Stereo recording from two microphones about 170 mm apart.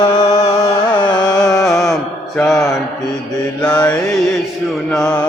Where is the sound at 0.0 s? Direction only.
35° left (ahead or behind).